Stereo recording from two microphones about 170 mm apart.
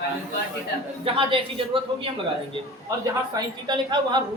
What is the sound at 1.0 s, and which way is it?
Speech, 30° right (ahead or behind).